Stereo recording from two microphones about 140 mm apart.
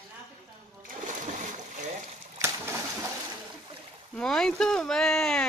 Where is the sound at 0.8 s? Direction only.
65° right (ahead or behind).